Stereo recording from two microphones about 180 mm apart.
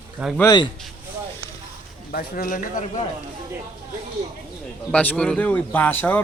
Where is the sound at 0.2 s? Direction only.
5° right (ahead or behind).